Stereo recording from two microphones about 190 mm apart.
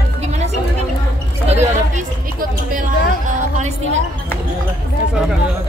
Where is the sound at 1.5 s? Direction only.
35° right (ahead or behind).